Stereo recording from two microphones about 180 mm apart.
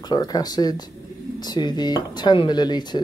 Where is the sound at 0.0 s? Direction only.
20° left (ahead or behind).